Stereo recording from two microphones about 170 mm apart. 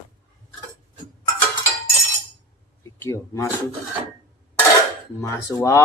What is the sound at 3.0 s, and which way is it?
Speech, 15° left (ahead or behind).